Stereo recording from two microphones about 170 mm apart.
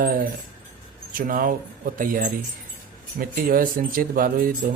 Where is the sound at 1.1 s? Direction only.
55° right (ahead or behind).